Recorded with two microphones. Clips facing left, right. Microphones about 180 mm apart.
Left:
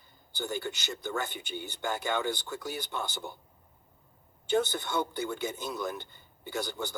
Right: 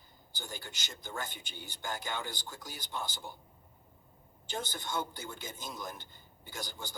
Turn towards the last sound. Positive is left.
turn(degrees=65)  # may be behind; listen again after turning